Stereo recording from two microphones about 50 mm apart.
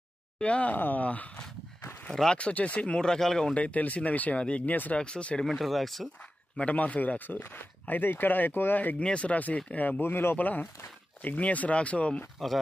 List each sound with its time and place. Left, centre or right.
0.4 s speech: left
3.0 s speech: centre
3.5 s speech: left
5.4 s speech: centre
6.6 s speech: left
9.0 s speech: left